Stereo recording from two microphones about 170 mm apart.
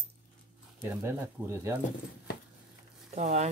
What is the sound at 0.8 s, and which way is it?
Speech, 15° right (ahead or behind).